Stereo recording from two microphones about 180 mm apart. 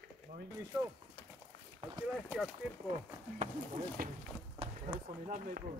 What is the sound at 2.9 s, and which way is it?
Speech, 45° right (ahead or behind).